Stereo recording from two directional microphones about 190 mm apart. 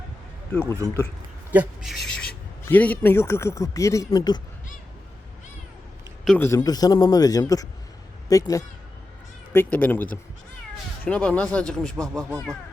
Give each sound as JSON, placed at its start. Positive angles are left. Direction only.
{"t": 0.5, "sound": "speech", "side_deg": 10}
{"t": 1.5, "sound": "speech", "side_deg": 0}
{"t": 6.2, "sound": "a man's voice", "side_deg": 10}